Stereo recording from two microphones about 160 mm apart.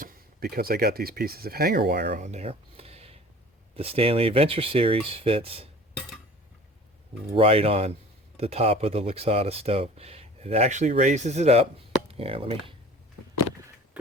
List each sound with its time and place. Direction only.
0.0 s speech: 65° right (ahead or behind)
2.1 s speech: 45° right (ahead or behind)
7.3 s speech: 40° right (ahead or behind)
14.0 s a sound: 10° right (ahead or behind)